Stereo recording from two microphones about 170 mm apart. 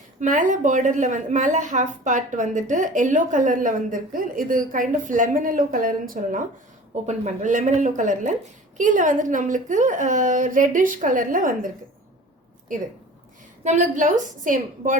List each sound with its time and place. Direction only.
0.2 s a woman's voice: 45° right (ahead or behind)
13.7 s a woman's voice: 45° right (ahead or behind)